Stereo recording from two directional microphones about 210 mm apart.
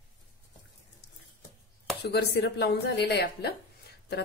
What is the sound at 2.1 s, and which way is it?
Speech, 55° left (ahead or behind).